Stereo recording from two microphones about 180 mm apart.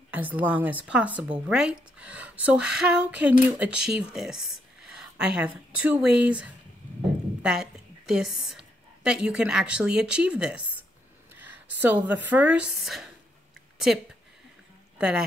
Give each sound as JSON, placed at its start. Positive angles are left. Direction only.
{"t": 0.1, "sound": "a woman's voice", "side_deg": -10}
{"t": 15.0, "sound": "speech", "side_deg": -5}